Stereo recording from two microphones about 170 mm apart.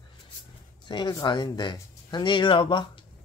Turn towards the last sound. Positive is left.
turn(degrees=30)  # may be behind; listen again after turning